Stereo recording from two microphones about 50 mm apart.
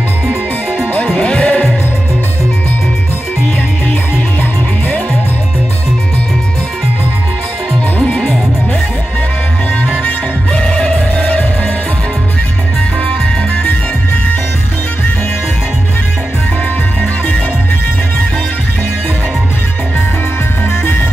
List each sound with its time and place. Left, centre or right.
0.9 s music: left
10.5 s music: centre
11.1 s music: left